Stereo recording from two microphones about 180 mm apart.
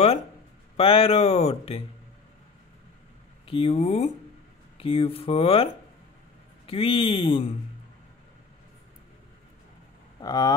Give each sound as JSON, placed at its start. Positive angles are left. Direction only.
{"t": 0.7, "sound": "speech", "side_deg": 35}
{"t": 3.4, "sound": "speech", "side_deg": 30}
{"t": 10.2, "sound": "speech", "side_deg": 20}